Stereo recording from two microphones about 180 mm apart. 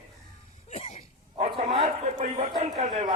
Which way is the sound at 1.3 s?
35° right (ahead or behind).